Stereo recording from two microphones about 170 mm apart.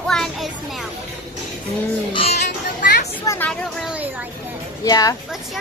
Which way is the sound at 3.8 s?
5° right (ahead or behind).